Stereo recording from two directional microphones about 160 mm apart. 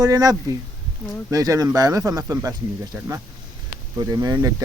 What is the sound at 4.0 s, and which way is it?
Speech, 25° right (ahead or behind).